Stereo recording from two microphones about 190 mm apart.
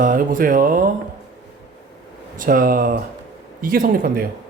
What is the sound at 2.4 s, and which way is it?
Speech, 45° right (ahead or behind).